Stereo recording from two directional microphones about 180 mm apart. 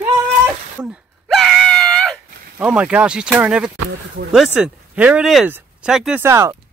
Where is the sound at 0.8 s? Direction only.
Centre (ahead or behind).